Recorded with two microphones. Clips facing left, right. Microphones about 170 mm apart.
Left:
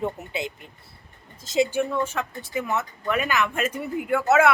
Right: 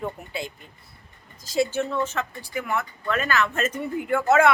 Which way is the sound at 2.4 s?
20° left (ahead or behind).